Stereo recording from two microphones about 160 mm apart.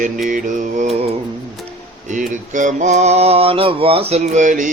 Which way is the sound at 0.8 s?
40° right (ahead or behind).